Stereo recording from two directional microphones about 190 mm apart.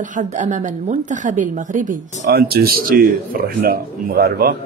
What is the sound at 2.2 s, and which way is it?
A man's voice, 55° right (ahead or behind).